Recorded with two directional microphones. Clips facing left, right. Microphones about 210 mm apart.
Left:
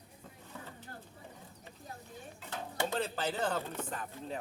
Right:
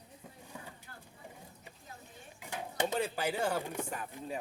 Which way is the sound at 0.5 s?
15° right (ahead or behind).